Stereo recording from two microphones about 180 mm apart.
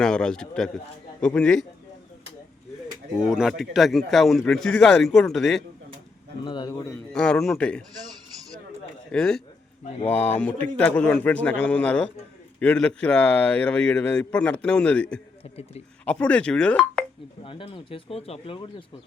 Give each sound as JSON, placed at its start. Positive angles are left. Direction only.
{"t": 0.0, "sound": "a man's voice", "side_deg": 5}
{"t": 3.2, "sound": "a man's voice", "side_deg": -5}
{"t": 6.4, "sound": "speech", "side_deg": 25}
{"t": 7.1, "sound": "a man's voice", "side_deg": 5}
{"t": 9.1, "sound": "a man's voice", "side_deg": 5}
{"t": 17.4, "sound": "speech", "side_deg": 30}